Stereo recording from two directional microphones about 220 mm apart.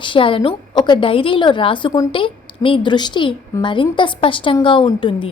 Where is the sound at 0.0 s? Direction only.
25° left (ahead or behind).